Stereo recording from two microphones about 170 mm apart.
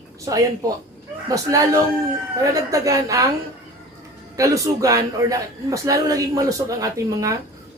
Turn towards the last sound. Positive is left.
turn(degrees=-20)  # may be behind; listen again after turning